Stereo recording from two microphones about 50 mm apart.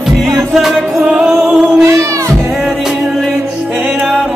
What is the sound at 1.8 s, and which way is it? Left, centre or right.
Music, right.